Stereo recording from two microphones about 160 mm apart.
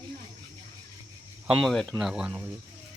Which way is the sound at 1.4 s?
5° right (ahead or behind).